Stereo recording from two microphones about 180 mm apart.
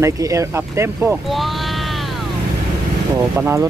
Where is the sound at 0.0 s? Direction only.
15° right (ahead or behind).